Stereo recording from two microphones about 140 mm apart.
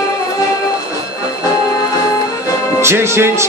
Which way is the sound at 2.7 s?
20° right (ahead or behind).